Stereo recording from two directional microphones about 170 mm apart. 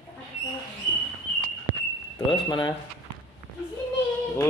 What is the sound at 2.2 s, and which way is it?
Speech, 25° left (ahead or behind).